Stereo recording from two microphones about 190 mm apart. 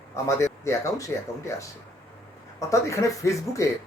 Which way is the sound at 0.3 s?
15° left (ahead or behind).